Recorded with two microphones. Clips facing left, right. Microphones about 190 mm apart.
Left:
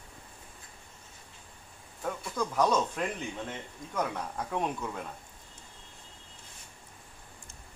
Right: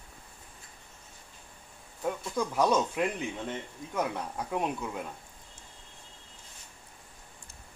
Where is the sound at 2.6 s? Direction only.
10° right (ahead or behind).